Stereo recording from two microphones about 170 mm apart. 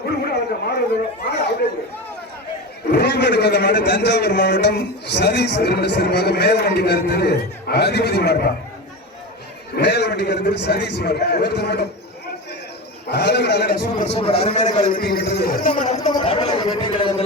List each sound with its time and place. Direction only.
0.3 s a sound: 75° left (ahead or behind)
2.9 s a man's voice: 85° left
9.7 s a man's voice: 75° left (ahead or behind)
13.1 s a man's voice: 80° left
14.0 s a man's voice: 35° left (ahead or behind)
14.8 s a man's voice: 55° left (ahead or behind)
15.2 s speech: 80° left; by 16.0 s 50° left (ahead or behind)
16.0 s speech: 25° left (ahead or behind)